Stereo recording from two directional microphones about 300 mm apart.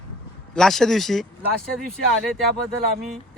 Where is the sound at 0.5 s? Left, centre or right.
Centre.